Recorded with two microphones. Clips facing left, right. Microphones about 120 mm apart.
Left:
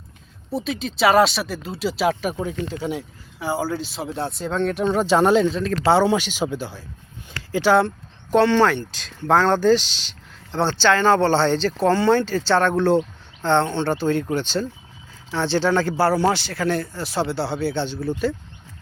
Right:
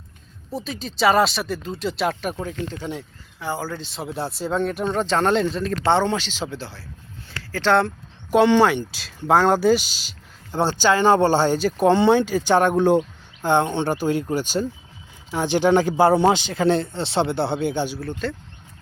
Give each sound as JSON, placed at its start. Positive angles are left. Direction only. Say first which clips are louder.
{"t": 0.5, "sound": "speech", "louder": "left 4 dB", "side_deg": 0}
{"t": 7.3, "sound": "a sound", "louder": "left 4 dB", "side_deg": 15}
{"t": 7.7, "sound": "speech", "louder": "left 1 dB", "side_deg": 0}
{"t": 8.3, "sound": "speech", "louder": "right 1 dB", "side_deg": -15}
{"t": 18.0, "sound": "speech", "louder": "left 5 dB", "side_deg": 0}